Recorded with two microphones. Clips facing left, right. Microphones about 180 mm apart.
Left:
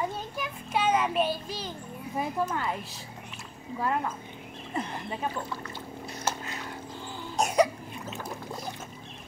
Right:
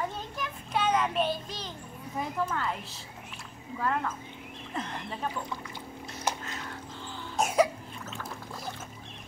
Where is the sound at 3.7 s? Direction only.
15° left (ahead or behind).